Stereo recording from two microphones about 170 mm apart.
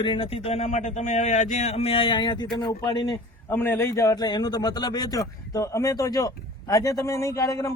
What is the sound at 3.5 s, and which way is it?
A man's voice, 15° left (ahead or behind).